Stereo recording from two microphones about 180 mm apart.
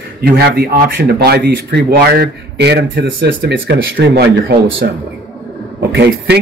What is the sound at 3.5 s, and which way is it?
Speech, 80° right.